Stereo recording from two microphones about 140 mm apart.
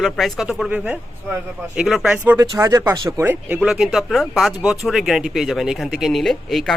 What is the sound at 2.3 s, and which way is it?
Speech, 20° right (ahead or behind).